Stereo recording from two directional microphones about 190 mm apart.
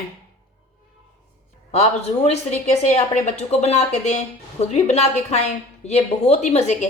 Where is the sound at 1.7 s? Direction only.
35° left (ahead or behind).